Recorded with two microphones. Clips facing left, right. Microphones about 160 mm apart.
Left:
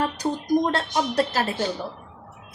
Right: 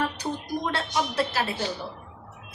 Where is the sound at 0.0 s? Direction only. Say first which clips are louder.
Left 4 dB; 40° left (ahead or behind).